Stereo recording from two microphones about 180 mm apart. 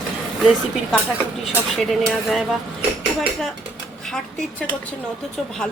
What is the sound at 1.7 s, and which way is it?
Speech, centre (ahead or behind).